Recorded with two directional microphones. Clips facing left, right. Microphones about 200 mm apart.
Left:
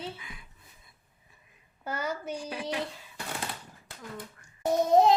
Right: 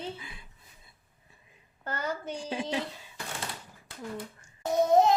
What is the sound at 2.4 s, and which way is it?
Speech, 25° right (ahead or behind).